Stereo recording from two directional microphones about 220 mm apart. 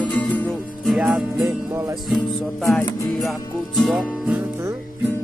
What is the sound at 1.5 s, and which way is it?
Music, 15° right (ahead or behind).